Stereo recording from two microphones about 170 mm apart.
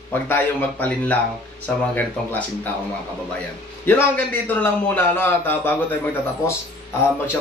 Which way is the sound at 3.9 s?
10° left (ahead or behind).